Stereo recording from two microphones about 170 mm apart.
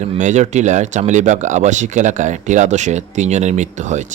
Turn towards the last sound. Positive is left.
turn(degrees=-45)  # may be behind; listen again after turning